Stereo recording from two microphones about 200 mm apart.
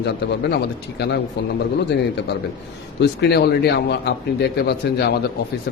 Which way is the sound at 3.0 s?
60° left (ahead or behind).